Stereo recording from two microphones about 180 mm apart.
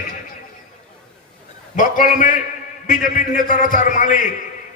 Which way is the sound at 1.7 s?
45° left (ahead or behind).